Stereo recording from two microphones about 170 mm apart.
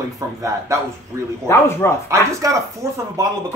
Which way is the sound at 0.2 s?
20° right (ahead or behind).